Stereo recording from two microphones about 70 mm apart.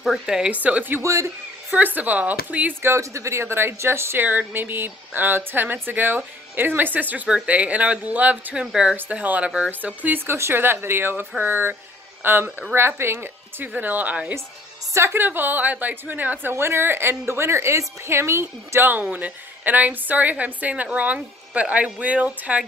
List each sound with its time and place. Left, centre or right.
0.0 s a woman's voice: centre
0.4 s a woman's voice: centre
1.0 s a man's voice: right
1.8 s a woman's voice: right
2.8 s a woman's voice: right
8.5 s speech: centre
8.9 s a woman's voice: right
15.0 s speech: right
18.9 s a woman's voice: right